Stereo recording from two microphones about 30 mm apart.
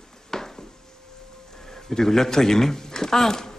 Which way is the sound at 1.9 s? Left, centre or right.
Centre.